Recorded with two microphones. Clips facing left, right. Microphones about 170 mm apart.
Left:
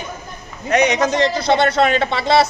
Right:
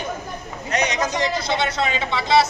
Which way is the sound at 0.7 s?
65° left (ahead or behind).